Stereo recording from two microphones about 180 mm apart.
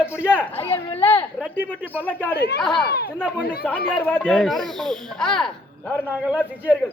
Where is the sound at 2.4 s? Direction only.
65° left (ahead or behind).